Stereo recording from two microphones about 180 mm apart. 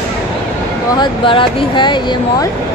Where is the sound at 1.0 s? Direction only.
30° left (ahead or behind).